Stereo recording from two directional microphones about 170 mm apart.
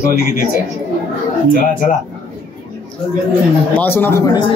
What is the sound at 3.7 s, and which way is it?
Speech, 10° left (ahead or behind).